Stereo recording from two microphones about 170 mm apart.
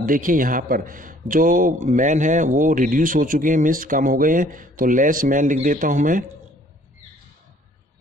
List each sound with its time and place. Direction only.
0.0 s a man's voice: 50° right (ahead or behind)